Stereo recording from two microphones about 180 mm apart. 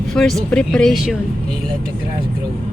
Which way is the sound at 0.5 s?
5° left (ahead or behind).